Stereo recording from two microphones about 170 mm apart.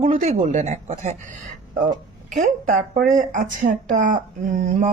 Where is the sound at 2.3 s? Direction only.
50° right (ahead or behind).